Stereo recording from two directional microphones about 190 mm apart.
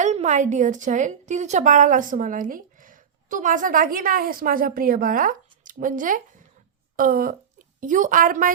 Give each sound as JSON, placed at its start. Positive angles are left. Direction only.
{"t": 0.0, "sound": "a woman's voice", "side_deg": -40}